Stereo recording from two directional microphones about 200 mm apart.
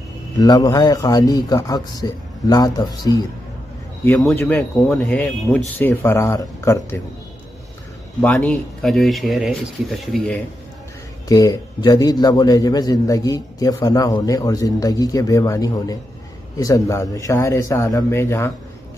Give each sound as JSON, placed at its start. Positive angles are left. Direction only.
{"t": 0.4, "sound": "speech", "side_deg": 20}
{"t": 4.0, "sound": "a man's voice", "side_deg": 5}
{"t": 8.2, "sound": "speech", "side_deg": 5}
{"t": 11.2, "sound": "a man's voice", "side_deg": 20}